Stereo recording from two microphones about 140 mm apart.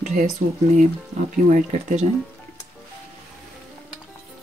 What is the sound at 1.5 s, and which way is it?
Speech, 65° right (ahead or behind).